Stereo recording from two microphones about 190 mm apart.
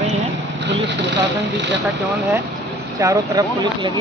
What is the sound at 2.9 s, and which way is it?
Speech, 20° right (ahead or behind).